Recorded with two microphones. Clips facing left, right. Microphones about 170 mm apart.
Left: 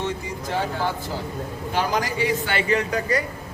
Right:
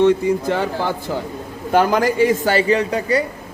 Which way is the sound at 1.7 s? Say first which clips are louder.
Right 9 dB; 55° right (ahead or behind).